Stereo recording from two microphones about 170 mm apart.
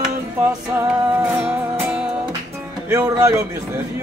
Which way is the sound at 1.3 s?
10° right (ahead or behind).